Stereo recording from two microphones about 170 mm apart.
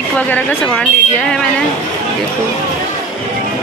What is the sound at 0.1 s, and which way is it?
Speech, 10° left (ahead or behind).